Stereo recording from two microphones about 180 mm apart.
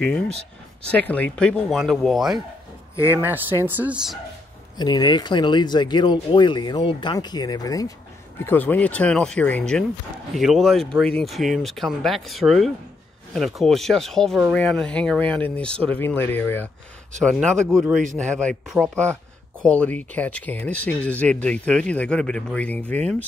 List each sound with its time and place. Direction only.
0.0 s speech: 5° left (ahead or behind)
3.0 s speech: 10° right (ahead or behind)
4.7 s speech: 25° left (ahead or behind); by 22.9 s 10° left (ahead or behind)